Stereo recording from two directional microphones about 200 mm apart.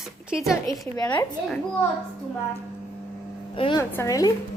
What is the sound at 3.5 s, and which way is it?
Speech, 25° left (ahead or behind).